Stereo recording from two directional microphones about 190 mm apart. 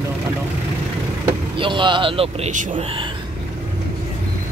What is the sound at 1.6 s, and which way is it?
Speech, 25° right (ahead or behind).